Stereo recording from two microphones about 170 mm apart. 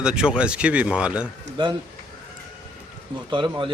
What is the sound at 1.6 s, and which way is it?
Speech, 25° right (ahead or behind).